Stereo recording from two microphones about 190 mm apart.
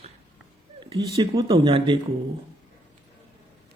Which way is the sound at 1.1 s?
25° right (ahead or behind).